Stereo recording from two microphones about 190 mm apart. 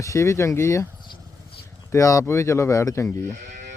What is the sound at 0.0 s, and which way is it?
Speech, 15° left (ahead or behind).